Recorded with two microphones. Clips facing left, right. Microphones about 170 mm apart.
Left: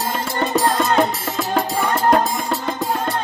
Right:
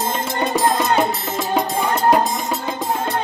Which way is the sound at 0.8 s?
5° right (ahead or behind).